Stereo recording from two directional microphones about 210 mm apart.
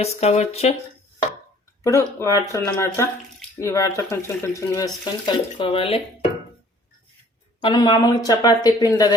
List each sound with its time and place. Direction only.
0.0 s speech: 30° left (ahead or behind)
1.8 s speech: 15° left (ahead or behind)
7.6 s speech: 20° left (ahead or behind)